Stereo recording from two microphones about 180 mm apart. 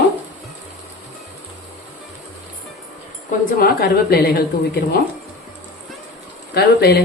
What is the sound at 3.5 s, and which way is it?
Speech, 55° left (ahead or behind).